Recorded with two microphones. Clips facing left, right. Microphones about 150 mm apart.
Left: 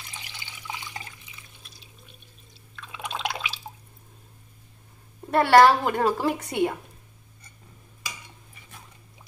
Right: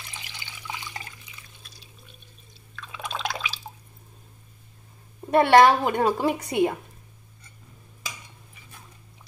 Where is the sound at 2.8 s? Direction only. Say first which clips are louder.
Even; 20° left (ahead or behind).